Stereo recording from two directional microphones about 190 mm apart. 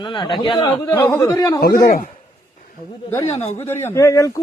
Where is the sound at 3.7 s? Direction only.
15° left (ahead or behind).